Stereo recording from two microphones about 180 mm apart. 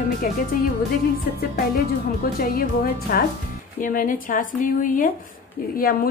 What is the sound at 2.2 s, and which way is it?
A woman's voice, 55° left (ahead or behind).